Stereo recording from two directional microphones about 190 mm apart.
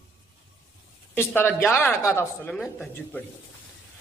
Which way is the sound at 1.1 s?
10° left (ahead or behind).